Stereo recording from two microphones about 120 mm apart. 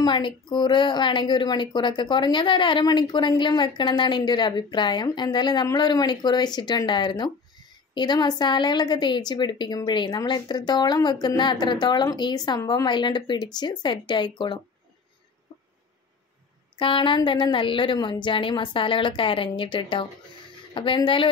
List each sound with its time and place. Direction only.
0.0 s a woman's voice: 40° left (ahead or behind)
16.7 s a woman's voice: 45° left (ahead or behind)